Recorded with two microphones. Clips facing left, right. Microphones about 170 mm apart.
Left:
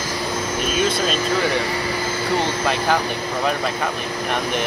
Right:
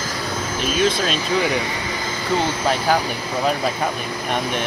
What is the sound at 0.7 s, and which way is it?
Speech, 5° left (ahead or behind).